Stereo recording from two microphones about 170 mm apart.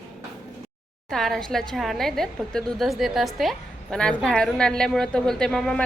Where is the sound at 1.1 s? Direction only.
Centre (ahead or behind).